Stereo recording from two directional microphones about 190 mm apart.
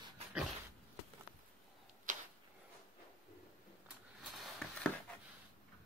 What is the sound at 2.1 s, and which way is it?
Tick-tock, 45° right (ahead or behind).